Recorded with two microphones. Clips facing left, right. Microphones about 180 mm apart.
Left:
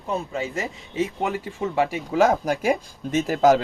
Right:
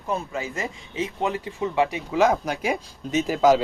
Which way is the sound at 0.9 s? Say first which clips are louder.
Left 2 dB; 45° left (ahead or behind).